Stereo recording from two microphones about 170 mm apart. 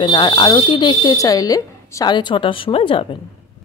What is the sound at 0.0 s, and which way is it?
Speech, 25° left (ahead or behind).